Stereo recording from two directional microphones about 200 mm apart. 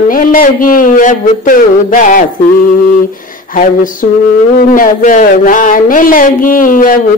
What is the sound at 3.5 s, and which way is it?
Speech, 40° left (ahead or behind).